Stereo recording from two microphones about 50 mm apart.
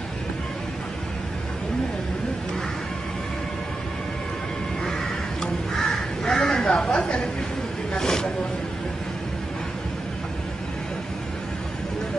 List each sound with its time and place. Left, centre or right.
5.4 s crow: centre
7.9 s speech: centre